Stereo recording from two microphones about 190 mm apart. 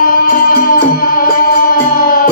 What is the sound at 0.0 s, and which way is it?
Music, 50° left (ahead or behind).